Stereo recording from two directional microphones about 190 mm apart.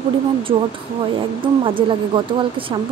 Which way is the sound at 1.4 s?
25° right (ahead or behind).